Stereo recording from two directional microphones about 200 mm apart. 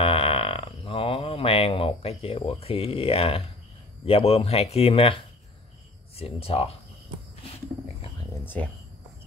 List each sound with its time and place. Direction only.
0.0 s mantra: 25° left (ahead or behind)
4.0 s speech: 30° left (ahead or behind)
8.6 s speech: 10° left (ahead or behind)